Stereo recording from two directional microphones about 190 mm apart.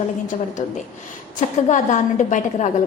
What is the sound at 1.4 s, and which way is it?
A woman's voice, 40° left (ahead or behind).